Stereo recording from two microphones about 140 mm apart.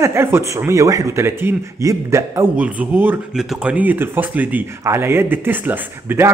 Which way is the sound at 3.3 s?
5° right (ahead or behind).